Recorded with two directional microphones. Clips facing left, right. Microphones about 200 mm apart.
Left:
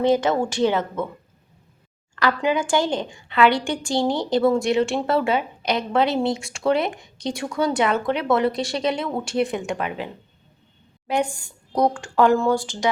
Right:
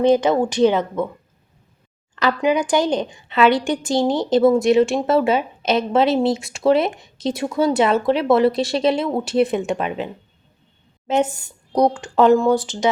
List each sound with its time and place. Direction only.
0.1 s speech: 20° right (ahead or behind)
2.1 s a woman's voice: 20° right (ahead or behind)
11.1 s a woman's voice: 20° right (ahead or behind)